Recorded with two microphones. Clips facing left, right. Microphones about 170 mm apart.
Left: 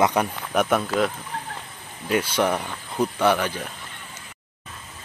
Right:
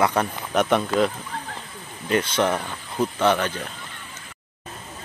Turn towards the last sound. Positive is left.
turn(degrees=10)  # may be behind; listen again after turning